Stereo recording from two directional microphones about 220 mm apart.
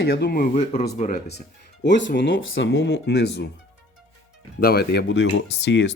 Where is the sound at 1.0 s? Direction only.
35° left (ahead or behind).